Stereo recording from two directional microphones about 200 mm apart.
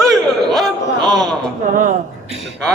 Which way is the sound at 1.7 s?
40° right (ahead or behind).